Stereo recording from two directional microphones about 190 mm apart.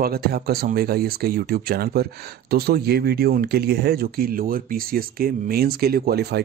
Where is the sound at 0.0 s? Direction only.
55° right (ahead or behind).